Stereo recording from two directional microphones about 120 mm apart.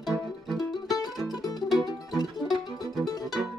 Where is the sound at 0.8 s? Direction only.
30° left (ahead or behind).